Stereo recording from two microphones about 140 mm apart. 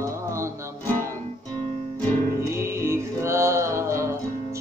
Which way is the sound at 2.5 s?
20° right (ahead or behind).